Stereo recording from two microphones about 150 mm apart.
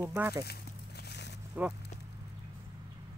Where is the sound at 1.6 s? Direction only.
10° right (ahead or behind).